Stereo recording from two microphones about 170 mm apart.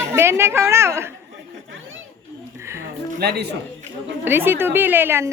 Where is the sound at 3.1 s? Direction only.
70° right (ahead or behind).